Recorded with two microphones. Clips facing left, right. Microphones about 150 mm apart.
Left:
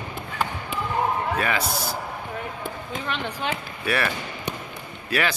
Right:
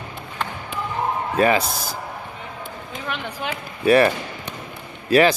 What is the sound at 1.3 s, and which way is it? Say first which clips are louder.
Speech: right 7 dB; 35° right (ahead or behind).